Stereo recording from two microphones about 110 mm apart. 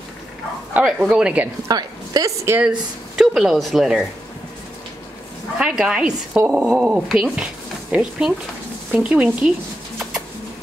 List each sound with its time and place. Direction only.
0.7 s speech: 10° right (ahead or behind)
1.7 s a woman's voice: 35° right (ahead or behind)
2.6 s speech: 5° right (ahead or behind)
5.6 s speech: 5° right (ahead or behind)